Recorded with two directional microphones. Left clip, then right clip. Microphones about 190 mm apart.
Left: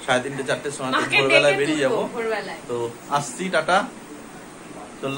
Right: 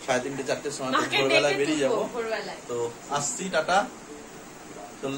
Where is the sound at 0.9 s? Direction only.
20° right (ahead or behind).